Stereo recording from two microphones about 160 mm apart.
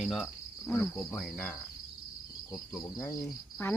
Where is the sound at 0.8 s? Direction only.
15° left (ahead or behind).